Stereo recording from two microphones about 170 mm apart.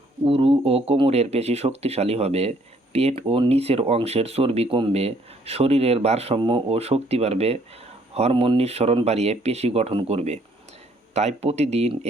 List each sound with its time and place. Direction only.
0.3 s speech: 35° right (ahead or behind)